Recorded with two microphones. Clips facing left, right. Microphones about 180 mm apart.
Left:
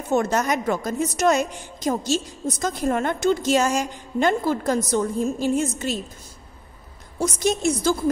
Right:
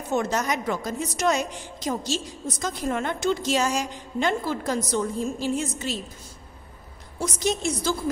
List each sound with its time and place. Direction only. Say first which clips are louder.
0.1 s a woman's voice: left 4 dB; 50° left (ahead or behind)
7.2 s a woman's voice: left 4 dB; 45° left (ahead or behind)